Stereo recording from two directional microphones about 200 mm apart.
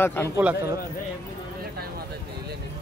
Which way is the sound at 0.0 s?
10° left (ahead or behind).